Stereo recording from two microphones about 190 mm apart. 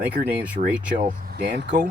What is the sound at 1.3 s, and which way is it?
Speech, 60° right (ahead or behind).